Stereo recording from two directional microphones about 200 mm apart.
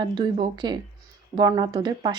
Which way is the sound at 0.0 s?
20° right (ahead or behind).